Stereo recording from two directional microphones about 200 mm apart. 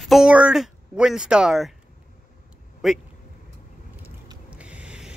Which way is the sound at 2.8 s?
Centre (ahead or behind).